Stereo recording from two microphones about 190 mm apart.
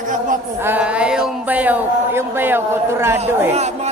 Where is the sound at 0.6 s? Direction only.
10° right (ahead or behind).